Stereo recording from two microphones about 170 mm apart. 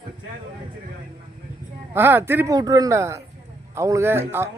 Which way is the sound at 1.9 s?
10° right (ahead or behind).